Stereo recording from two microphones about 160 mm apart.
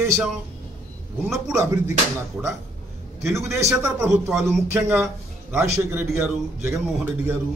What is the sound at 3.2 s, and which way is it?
Speech, centre (ahead or behind).